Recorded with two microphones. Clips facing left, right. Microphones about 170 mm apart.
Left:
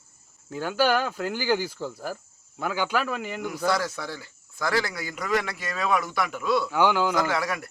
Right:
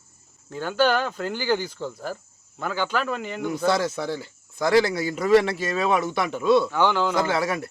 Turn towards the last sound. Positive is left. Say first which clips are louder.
# right 3 dB
turn(degrees=-25)  # may be behind; listen again after turning